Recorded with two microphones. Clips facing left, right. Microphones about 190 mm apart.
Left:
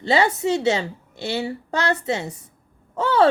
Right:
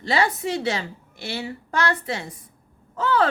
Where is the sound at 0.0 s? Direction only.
25° left (ahead or behind).